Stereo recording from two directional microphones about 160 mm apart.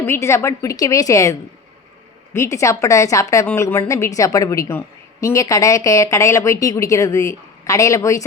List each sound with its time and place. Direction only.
0.0 s speech: 15° left (ahead or behind)